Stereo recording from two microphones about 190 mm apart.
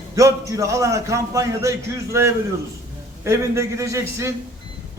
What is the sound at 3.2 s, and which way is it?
A man's voice, 15° right (ahead or behind).